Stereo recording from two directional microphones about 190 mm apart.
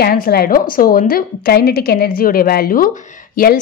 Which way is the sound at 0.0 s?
55° left (ahead or behind).